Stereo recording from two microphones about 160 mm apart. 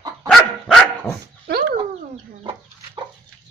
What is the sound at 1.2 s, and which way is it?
Dog, 80° right.